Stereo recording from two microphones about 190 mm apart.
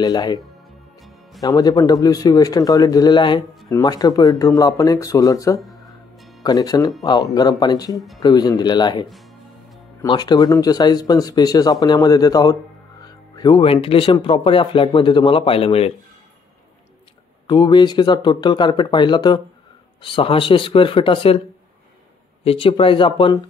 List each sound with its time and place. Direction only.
0.0 s speech: 20° left (ahead or behind)
1.4 s speech: 20° left (ahead or behind)
6.1 s music: centre (ahead or behind)
6.4 s speech: 20° left (ahead or behind)
10.0 s speech: 20° left (ahead or behind)
17.5 s speech: 25° left (ahead or behind)
22.4 s speech: 30° left (ahead or behind)